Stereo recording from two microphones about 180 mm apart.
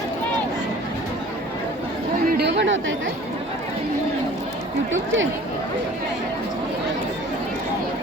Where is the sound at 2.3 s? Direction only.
70° right (ahead or behind).